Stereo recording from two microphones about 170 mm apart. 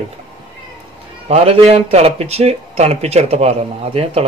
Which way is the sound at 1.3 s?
35° right (ahead or behind).